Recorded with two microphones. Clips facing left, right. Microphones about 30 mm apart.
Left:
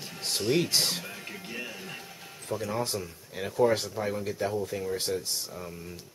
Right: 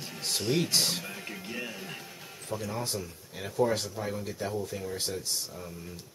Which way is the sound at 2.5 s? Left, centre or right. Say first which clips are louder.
Left 3 dB; centre.